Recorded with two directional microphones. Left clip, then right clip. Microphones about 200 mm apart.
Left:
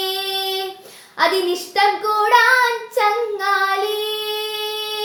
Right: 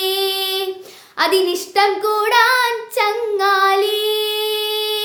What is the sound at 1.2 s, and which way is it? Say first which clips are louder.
Child singing: right 1 dB; 15° right (ahead or behind).